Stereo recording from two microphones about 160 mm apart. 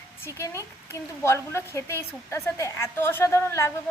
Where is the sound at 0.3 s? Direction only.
20° left (ahead or behind).